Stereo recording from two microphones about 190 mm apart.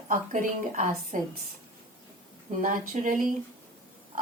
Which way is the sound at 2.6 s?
45° right (ahead or behind).